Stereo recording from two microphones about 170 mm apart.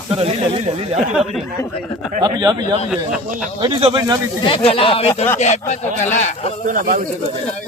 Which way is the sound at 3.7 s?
35° right (ahead or behind).